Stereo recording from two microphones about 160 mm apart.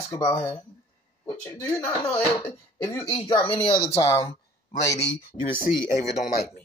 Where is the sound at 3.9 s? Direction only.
15° left (ahead or behind).